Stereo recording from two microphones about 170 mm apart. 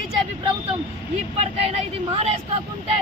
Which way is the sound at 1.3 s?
35° right (ahead or behind).